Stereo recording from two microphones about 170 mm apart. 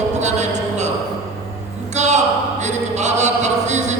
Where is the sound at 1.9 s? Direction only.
45° right (ahead or behind).